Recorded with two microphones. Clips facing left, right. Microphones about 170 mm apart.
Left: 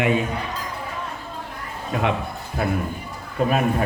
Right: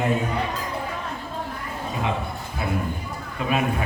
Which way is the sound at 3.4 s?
45° left (ahead or behind).